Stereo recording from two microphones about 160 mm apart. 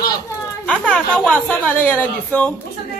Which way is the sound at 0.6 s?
10° left (ahead or behind).